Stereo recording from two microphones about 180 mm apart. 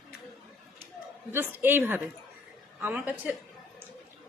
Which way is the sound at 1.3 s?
10° right (ahead or behind).